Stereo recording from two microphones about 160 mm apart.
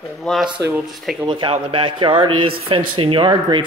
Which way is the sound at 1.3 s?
35° right (ahead or behind).